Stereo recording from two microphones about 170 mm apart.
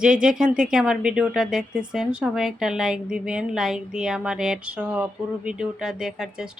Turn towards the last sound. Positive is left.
turn(degrees=-5)  # may be behind; listen again after turning